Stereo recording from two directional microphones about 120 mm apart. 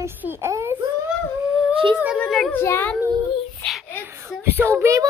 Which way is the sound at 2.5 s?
20° left (ahead or behind).